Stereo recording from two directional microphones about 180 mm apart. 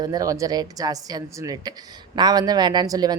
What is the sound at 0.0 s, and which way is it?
A woman's voice, 20° right (ahead or behind).